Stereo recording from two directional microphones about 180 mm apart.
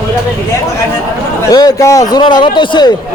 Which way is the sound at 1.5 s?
20° left (ahead or behind).